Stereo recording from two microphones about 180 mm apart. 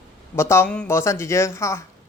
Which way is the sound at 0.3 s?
15° left (ahead or behind).